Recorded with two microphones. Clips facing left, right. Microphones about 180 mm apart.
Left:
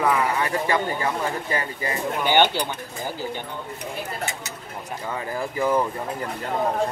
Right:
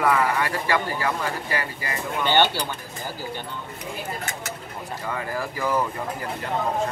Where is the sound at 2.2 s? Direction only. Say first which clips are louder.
Left 1 dB; 15° left (ahead or behind).